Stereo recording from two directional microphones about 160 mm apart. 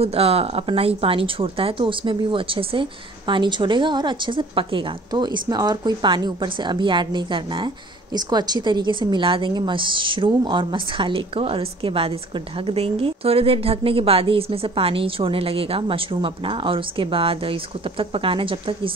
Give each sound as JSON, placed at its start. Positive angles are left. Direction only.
{"t": 0.0, "sound": "speech", "side_deg": -40}